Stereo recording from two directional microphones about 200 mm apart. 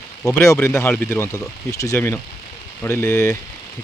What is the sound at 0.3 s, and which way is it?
Speech, 15° left (ahead or behind).